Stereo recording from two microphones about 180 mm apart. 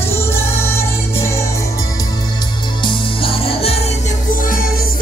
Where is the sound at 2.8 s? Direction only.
30° left (ahead or behind).